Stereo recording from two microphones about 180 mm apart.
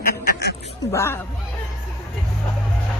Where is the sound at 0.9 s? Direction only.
15° left (ahead or behind).